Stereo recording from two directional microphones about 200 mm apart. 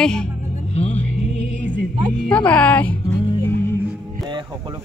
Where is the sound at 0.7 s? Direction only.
35° left (ahead or behind).